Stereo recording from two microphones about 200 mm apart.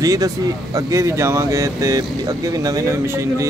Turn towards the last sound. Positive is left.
turn(degrees=-15)  # may be behind; listen again after turning